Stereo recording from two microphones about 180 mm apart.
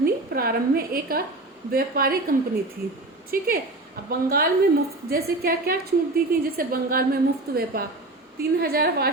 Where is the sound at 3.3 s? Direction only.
50° right (ahead or behind).